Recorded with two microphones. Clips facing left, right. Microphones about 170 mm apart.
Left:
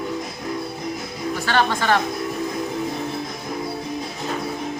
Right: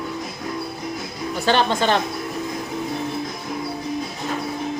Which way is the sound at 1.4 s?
20° right (ahead or behind).